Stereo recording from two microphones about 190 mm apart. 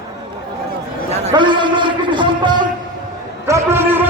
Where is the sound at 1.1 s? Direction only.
30° right (ahead or behind).